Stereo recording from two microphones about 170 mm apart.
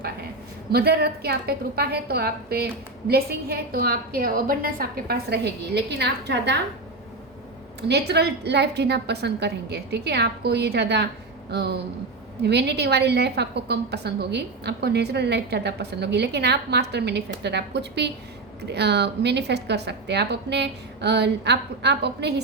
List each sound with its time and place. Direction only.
0.7 s a woman's voice: 65° right (ahead or behind)
7.8 s a woman's voice: 75° right (ahead or behind)